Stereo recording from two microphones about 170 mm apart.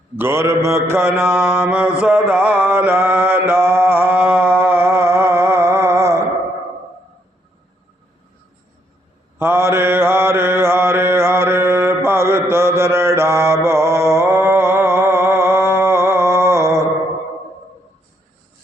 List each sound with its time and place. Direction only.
0.2 s mantra: 15° right (ahead or behind)
9.4 s mantra: 15° right (ahead or behind)
13.7 s a sound: 15° right (ahead or behind)